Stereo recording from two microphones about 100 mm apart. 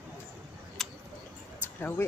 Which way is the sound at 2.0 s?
25° left (ahead or behind).